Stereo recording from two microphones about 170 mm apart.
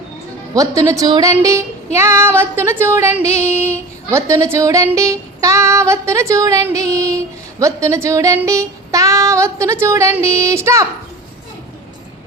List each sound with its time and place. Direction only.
0.5 s female singing: 20° right (ahead or behind)